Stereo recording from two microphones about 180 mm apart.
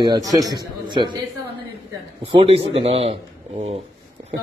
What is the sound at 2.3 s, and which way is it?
A man's voice, 30° right (ahead or behind).